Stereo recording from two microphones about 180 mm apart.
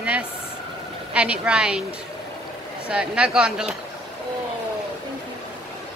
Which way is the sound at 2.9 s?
5° right (ahead or behind).